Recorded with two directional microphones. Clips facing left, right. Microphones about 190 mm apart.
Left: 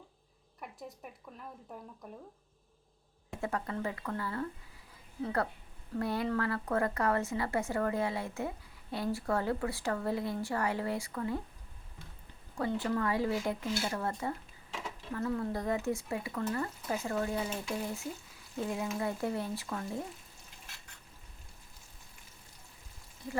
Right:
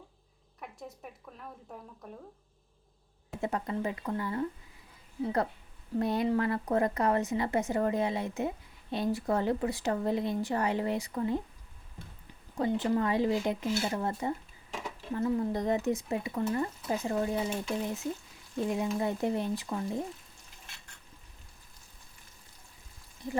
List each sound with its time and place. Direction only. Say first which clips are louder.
3.4 s a woman's voice: right 3 dB; 20° right (ahead or behind)
12.5 s a woman's voice: right 4 dB; 20° right (ahead or behind)